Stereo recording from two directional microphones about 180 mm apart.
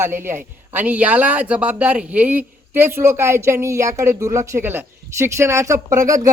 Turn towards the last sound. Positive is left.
turn(degrees=-15)  # may be behind; listen again after turning